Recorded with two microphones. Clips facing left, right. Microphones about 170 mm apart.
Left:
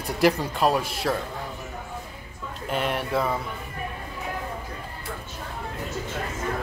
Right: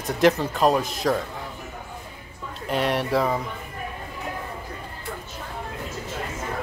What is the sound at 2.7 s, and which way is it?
Speech, centre (ahead or behind).